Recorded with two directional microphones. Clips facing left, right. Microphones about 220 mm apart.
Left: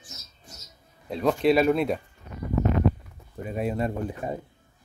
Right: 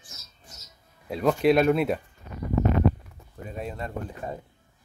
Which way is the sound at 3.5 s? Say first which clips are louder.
Left 7 dB; 10° left (ahead or behind).